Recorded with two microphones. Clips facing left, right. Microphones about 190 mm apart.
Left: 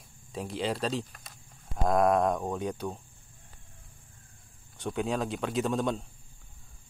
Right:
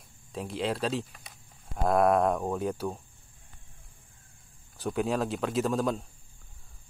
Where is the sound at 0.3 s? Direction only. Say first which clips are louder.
Right 1 dB; centre (ahead or behind).